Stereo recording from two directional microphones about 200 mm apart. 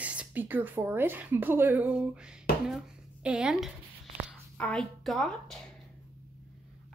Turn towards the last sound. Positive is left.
turn(degrees=0)  # may be behind; listen again after turning